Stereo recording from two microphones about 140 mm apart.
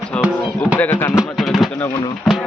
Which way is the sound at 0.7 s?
15° left (ahead or behind).